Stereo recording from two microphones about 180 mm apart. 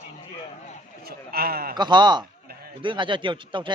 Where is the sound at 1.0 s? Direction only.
60° right (ahead or behind).